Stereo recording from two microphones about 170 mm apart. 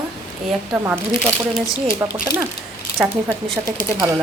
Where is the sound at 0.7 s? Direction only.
10° right (ahead or behind).